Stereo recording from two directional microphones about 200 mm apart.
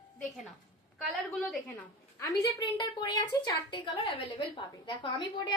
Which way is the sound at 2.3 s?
20° left (ahead or behind).